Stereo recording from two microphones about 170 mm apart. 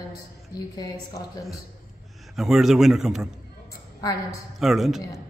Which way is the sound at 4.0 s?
20° left (ahead or behind).